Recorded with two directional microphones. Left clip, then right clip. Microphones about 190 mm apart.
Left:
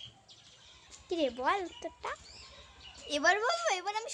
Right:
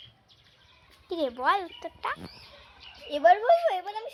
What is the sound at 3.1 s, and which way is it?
A woman's voice, 35° left (ahead or behind).